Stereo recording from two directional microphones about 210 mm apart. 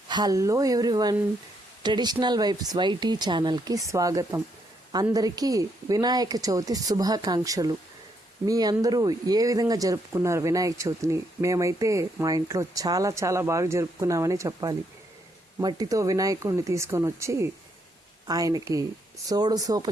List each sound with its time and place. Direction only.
0.1 s speech: 20° right (ahead or behind)